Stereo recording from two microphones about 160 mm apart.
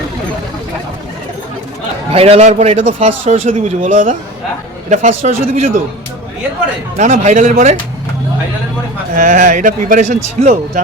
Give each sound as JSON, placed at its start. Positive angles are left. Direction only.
{"t": 2.1, "sound": "a man's voice", "side_deg": -40}
{"t": 6.9, "sound": "a man's voice", "side_deg": -50}
{"t": 9.1, "sound": "speech", "side_deg": -55}